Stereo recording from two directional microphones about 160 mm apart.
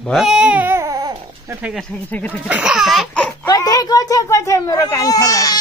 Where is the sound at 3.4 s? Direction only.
20° left (ahead or behind).